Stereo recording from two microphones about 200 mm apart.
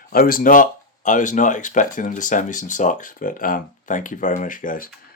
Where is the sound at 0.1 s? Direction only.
45° left (ahead or behind).